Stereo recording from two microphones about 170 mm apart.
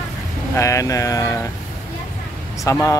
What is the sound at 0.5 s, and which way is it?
Speech, 20° left (ahead or behind).